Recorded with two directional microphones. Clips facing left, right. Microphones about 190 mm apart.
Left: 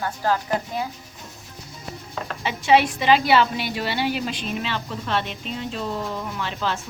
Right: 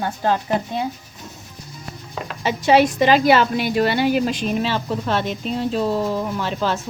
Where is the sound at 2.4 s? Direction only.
40° right (ahead or behind).